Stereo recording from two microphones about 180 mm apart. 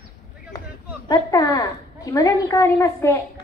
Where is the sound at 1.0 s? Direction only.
20° left (ahead or behind).